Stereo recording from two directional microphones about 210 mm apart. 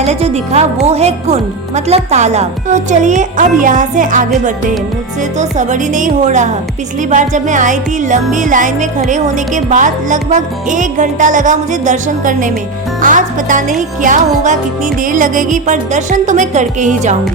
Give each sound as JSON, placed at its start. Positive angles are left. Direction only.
{"t": 0.0, "sound": "music", "side_deg": -30}
{"t": 5.4, "sound": "music", "side_deg": -35}